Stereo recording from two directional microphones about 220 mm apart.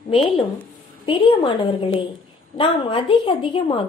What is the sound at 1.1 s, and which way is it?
A woman's voice, 25° left (ahead or behind).